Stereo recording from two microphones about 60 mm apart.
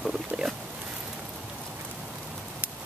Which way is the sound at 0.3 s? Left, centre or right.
Centre.